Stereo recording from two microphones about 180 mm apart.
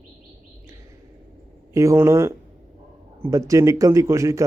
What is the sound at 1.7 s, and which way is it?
Speech, 15° right (ahead or behind).